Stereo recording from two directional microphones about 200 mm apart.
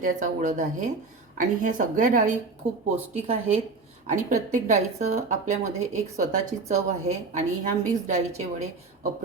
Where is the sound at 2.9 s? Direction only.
30° right (ahead or behind).